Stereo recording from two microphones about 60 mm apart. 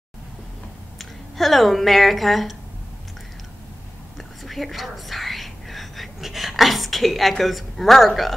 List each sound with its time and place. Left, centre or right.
0.9 s speech: centre
4.2 s whispering: centre